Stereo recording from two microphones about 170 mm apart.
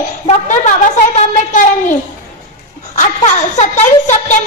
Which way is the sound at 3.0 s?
45° left (ahead or behind).